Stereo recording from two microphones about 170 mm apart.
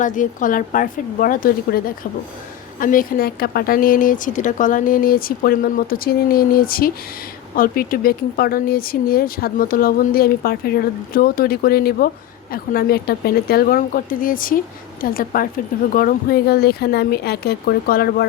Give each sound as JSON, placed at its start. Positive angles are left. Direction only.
{"t": 0.0, "sound": "a woman's voice", "side_deg": 50}